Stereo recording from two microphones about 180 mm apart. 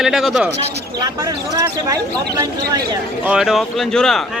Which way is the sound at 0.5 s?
20° right (ahead or behind).